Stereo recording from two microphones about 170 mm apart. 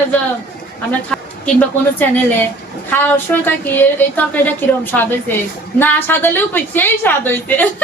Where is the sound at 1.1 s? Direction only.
10° left (ahead or behind).